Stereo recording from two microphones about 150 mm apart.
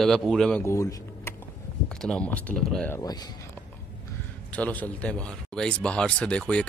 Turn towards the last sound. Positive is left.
turn(degrees=5)  # may be behind; listen again after turning